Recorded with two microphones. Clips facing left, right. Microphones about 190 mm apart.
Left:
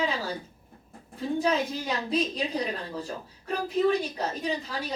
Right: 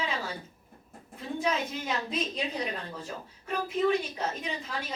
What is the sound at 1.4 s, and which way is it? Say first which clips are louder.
A woman's voice: left 3 dB; 35° left (ahead or behind).